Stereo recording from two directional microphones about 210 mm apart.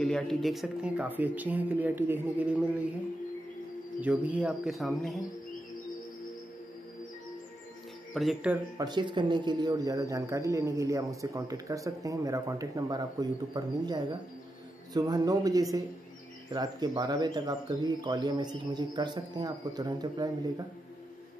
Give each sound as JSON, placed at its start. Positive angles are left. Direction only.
{"t": 0.0, "sound": "speech", "side_deg": 5}
{"t": 4.0, "sound": "speech", "side_deg": -5}
{"t": 8.1, "sound": "speech", "side_deg": 0}
{"t": 8.7, "sound": "speech", "side_deg": -20}